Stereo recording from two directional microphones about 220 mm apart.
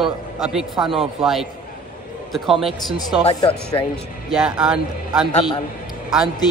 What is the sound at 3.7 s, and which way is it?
Speech, 15° left (ahead or behind).